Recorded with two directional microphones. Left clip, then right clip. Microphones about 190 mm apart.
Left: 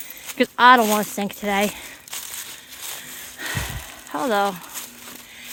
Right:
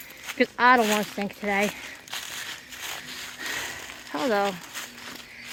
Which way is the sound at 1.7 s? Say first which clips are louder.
Left 1 dB; 10° left (ahead or behind).